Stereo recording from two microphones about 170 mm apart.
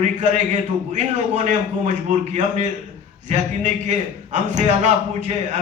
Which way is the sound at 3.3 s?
45° right (ahead or behind).